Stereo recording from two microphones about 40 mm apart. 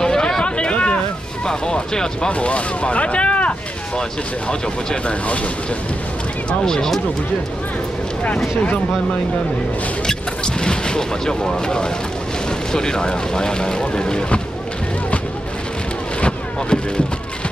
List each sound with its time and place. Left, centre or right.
0.0 s a sound: centre; by 1.0 s left
1.4 s speech: centre
5.0 s speech: left
6.6 s speech: centre
10.0 s speech: left
16.2 s a sound: left